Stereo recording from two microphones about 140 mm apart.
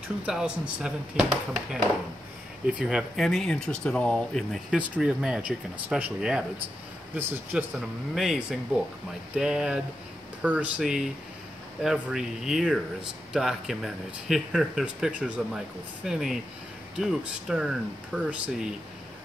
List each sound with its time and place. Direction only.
0.3 s speech: 5° right (ahead or behind)
7.5 s speech: 5° right (ahead or behind)